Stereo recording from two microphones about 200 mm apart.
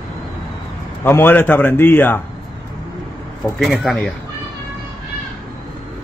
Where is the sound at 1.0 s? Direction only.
10° left (ahead or behind).